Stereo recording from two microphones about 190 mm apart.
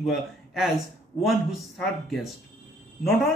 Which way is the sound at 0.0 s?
Centre (ahead or behind).